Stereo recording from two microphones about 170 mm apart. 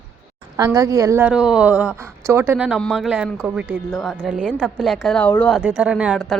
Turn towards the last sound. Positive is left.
turn(degrees=0)  # may be behind; listen again after turning